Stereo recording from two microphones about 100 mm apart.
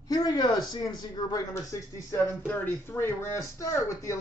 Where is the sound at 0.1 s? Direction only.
45° left (ahead or behind).